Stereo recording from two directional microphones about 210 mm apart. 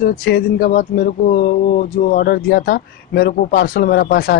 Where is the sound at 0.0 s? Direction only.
45° left (ahead or behind).